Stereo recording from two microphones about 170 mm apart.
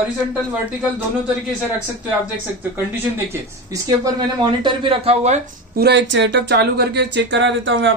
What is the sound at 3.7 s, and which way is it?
Speech, 25° right (ahead or behind).